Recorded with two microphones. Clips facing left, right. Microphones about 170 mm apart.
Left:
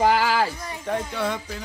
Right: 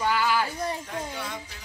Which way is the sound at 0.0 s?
90° left.